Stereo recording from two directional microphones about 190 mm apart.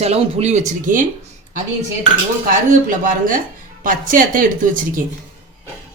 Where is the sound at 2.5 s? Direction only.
45° right (ahead or behind).